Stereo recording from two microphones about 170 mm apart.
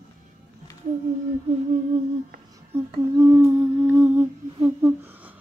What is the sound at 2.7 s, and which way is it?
Humming, 15° right (ahead or behind).